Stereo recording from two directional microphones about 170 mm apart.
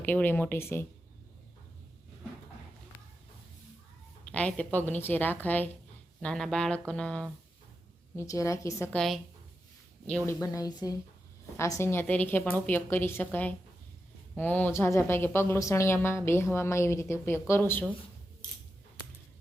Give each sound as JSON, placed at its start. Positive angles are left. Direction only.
{"t": 0.0, "sound": "speech", "side_deg": 10}
{"t": 4.3, "sound": "speech", "side_deg": 5}
{"t": 8.1, "sound": "speech", "side_deg": 15}
{"t": 9.0, "sound": "speech", "side_deg": 0}
{"t": 10.4, "sound": "speech", "side_deg": 20}